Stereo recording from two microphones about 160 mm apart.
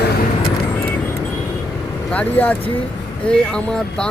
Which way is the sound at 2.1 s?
10° left (ahead or behind).